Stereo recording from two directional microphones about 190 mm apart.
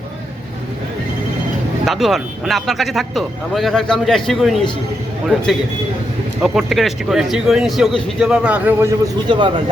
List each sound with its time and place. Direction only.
1.8 s speech: centre (ahead or behind)
6.4 s speech: centre (ahead or behind)
9.3 s speech: 25° right (ahead or behind)